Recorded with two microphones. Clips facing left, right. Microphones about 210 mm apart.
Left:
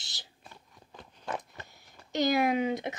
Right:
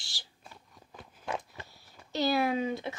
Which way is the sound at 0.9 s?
10° right (ahead or behind).